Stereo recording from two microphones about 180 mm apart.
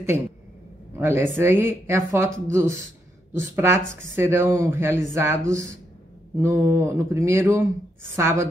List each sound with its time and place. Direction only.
0.9 s speech: 10° right (ahead or behind)